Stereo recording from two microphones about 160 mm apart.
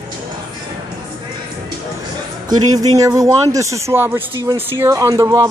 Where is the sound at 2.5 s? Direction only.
20° right (ahead or behind).